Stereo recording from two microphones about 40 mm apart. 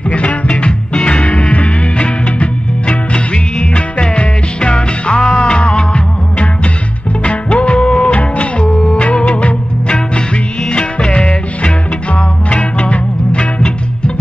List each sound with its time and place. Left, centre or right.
0.1 s music: left